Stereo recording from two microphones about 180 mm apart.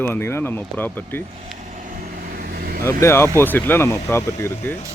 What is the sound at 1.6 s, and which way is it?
Vehicle, 45° right (ahead or behind).